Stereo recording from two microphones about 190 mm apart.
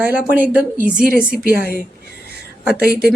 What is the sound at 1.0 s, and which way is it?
Speech, 50° right (ahead or behind).